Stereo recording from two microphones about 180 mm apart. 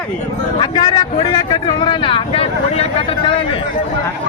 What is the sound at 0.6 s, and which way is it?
A man's voice, 25° left (ahead or behind).